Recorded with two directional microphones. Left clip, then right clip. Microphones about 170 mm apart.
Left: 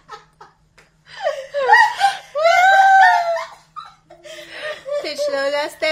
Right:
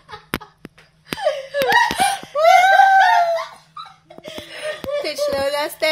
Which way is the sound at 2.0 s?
20° right (ahead or behind).